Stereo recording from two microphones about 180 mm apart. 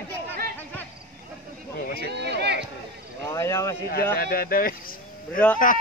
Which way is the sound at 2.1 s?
70° right (ahead or behind).